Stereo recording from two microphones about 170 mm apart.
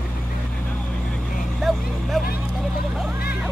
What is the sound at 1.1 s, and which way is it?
Vehicle, centre (ahead or behind).